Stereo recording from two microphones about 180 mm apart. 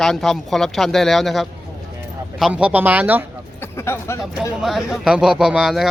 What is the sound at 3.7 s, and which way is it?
Speech, 15° left (ahead or behind).